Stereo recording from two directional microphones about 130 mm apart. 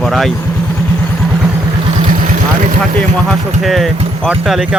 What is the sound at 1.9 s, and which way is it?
Vehicle, 90° right.